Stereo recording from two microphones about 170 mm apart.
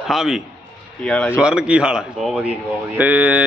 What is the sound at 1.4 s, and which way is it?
Speech, 5° right (ahead or behind).